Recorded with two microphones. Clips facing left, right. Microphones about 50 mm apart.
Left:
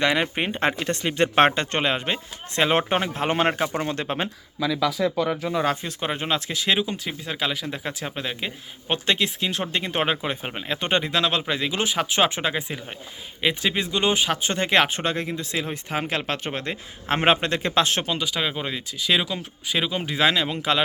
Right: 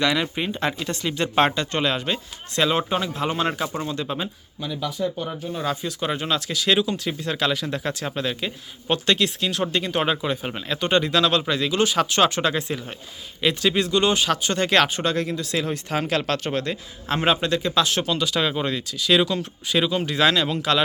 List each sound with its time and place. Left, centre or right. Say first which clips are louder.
0.0 s speech: left 1 dB; left
2.7 s speech: left 1 dB; left
5.0 s speech: left 4 dB; left
5.6 s speech: even; left
18.2 s speech: right 3 dB; centre